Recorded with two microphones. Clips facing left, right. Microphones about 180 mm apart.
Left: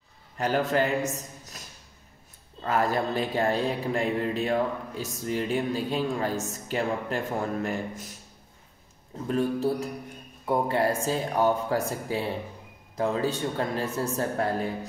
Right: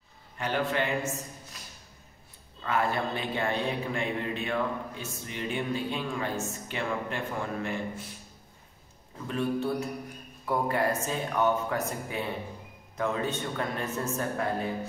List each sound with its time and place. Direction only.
0.4 s a man's voice: 40° left (ahead or behind)
2.6 s a man's voice: 40° left (ahead or behind)
9.3 s a man's voice: 40° left (ahead or behind)
10.4 s a man's voice: 25° left (ahead or behind)